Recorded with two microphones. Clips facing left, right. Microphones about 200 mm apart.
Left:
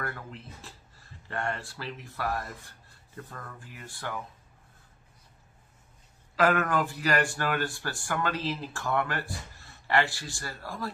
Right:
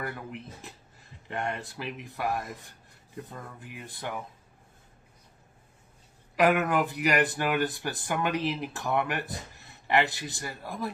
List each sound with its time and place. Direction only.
0.0 s speech: 15° right (ahead or behind)
6.3 s speech: 15° right (ahead or behind)